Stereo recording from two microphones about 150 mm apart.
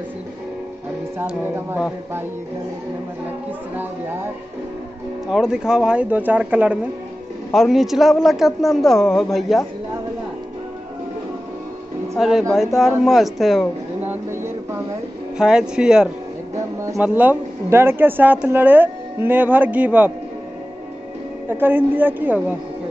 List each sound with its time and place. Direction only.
1.2 s speech: 15° right (ahead or behind)
5.3 s speech: 5° right (ahead or behind)
7.5 s a man's voice: centre (ahead or behind)
12.2 s a man's voice: centre (ahead or behind)
14.0 s a sound: 15° right (ahead or behind)
15.3 s a man's voice: 5° right (ahead or behind)
16.8 s speech: 15° right (ahead or behind)
21.5 s speech: 15° right (ahead or behind)